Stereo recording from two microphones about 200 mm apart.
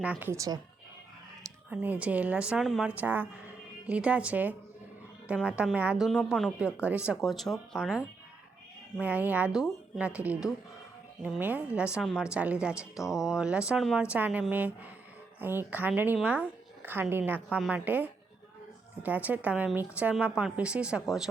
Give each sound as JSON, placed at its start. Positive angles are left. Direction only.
{"t": 0.0, "sound": "a woman's voice", "side_deg": -10}
{"t": 1.7, "sound": "a woman's voice", "side_deg": -10}